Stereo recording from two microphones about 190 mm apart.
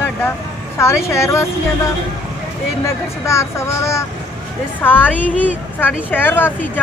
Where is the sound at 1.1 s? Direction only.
15° left (ahead or behind).